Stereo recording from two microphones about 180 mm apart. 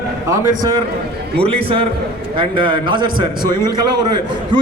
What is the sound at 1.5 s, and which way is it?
A man's voice, 35° right (ahead or behind).